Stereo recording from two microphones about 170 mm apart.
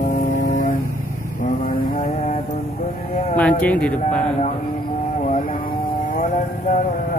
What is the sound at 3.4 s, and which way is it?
Speech, 10° left (ahead or behind).